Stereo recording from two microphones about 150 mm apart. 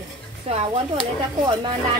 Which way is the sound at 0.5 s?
45° right (ahead or behind).